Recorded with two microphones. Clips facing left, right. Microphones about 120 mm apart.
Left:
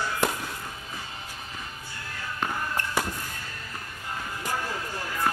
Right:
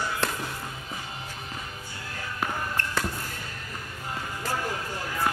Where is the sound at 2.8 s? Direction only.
15° left (ahead or behind).